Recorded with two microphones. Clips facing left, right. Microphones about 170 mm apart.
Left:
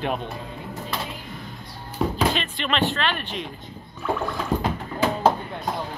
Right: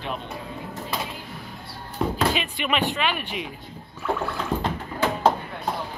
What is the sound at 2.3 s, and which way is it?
Speech, 10° right (ahead or behind).